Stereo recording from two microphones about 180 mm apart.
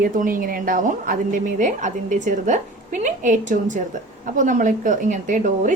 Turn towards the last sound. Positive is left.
turn(degrees=-45)  # may be behind; listen again after turning